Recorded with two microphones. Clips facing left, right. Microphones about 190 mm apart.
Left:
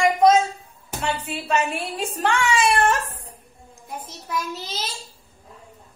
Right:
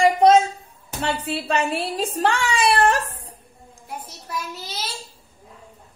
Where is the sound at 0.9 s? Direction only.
35° right (ahead or behind).